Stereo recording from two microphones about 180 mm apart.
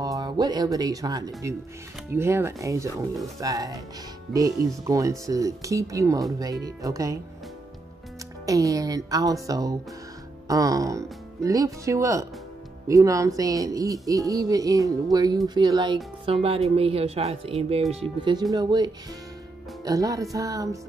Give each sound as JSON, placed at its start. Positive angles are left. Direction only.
{"t": 0.0, "sound": "speech", "side_deg": -20}
{"t": 8.5, "sound": "speech", "side_deg": -20}
{"t": 18.2, "sound": "speech", "side_deg": -25}